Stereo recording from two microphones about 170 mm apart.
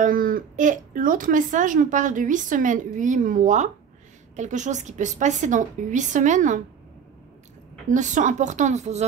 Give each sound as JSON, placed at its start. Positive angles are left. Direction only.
{"t": 0.0, "sound": "speech", "side_deg": -55}
{"t": 7.9, "sound": "speech", "side_deg": -45}